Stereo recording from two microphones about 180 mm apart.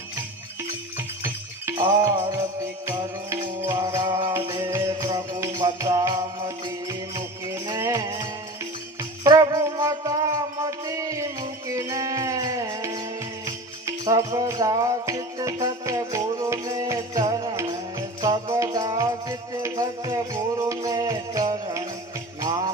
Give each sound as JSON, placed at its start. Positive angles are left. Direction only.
{"t": 0.9, "sound": "music", "side_deg": -15}
{"t": 9.2, "sound": "wind instrument", "side_deg": -20}
{"t": 15.6, "sound": "music", "side_deg": -20}